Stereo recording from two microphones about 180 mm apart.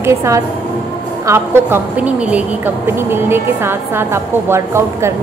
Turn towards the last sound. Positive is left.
turn(degrees=-15)  # may be behind; listen again after turning